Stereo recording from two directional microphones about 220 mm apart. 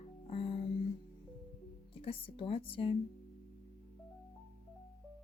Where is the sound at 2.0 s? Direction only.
25° left (ahead or behind).